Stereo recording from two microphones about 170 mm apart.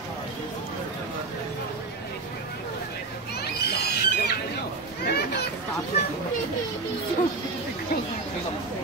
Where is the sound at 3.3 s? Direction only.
70° left (ahead or behind).